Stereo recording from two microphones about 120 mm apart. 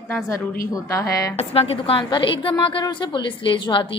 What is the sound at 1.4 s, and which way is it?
A woman's voice, 55° left (ahead or behind).